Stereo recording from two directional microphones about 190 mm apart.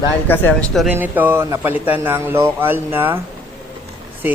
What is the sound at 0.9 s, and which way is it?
Speech, 10° right (ahead or behind).